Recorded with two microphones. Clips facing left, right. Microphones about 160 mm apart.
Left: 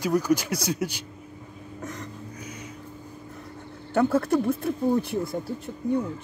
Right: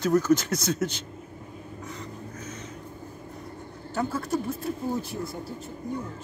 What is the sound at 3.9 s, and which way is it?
Speech, 60° left (ahead or behind).